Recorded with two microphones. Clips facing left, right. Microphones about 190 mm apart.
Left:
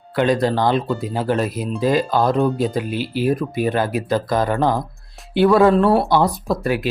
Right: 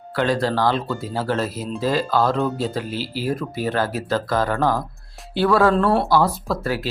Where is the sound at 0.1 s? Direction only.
20° left (ahead or behind).